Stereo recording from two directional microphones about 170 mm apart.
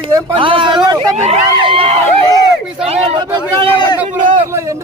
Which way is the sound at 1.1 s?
40° right (ahead or behind).